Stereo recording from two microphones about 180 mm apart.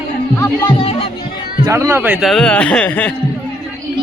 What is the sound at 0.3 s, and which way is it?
Speech, 15° left (ahead or behind).